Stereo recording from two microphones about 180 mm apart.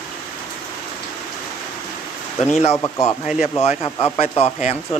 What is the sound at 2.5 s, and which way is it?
Speech, 35° left (ahead or behind).